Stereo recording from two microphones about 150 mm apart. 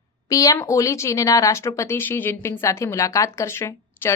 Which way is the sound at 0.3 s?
20° left (ahead or behind).